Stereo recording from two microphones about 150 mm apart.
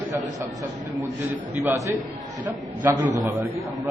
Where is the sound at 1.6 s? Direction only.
20° right (ahead or behind).